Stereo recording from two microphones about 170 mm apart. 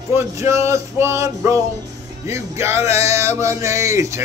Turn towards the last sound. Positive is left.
turn(degrees=-15)  # may be behind; listen again after turning